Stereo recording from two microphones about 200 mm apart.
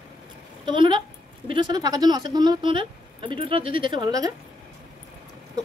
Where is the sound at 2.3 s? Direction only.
20° right (ahead or behind).